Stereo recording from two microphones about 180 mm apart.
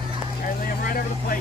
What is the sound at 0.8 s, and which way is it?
Vehicle, 50° left (ahead or behind).